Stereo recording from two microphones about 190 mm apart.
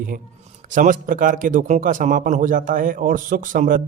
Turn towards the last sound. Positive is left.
turn(degrees=-45)  # may be behind; listen again after turning